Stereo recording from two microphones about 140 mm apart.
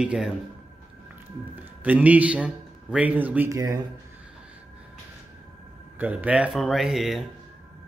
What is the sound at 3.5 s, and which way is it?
Speech, 25° right (ahead or behind).